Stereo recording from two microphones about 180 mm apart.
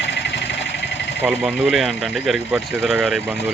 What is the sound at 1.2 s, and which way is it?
Speech, 5° right (ahead or behind).